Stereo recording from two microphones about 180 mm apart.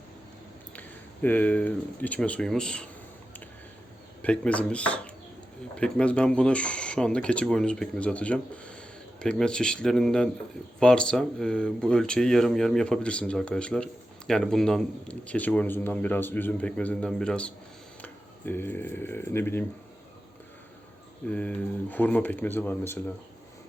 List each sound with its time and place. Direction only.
0.8 s speech: 10° left (ahead or behind)
4.2 s speech: 5° left (ahead or behind)
21.2 s speech: 10° left (ahead or behind)